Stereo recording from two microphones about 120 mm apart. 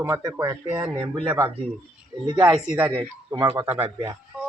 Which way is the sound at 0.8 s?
40° right (ahead or behind).